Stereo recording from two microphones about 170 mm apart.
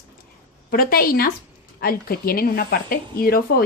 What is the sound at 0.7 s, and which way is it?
A woman's voice, 60° left (ahead or behind).